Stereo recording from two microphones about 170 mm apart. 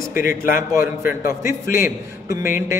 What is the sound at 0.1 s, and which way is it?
Speech, 55° left (ahead or behind).